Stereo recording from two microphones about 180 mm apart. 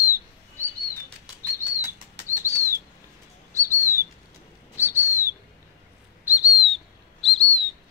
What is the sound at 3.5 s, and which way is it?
Bird, 15° right (ahead or behind).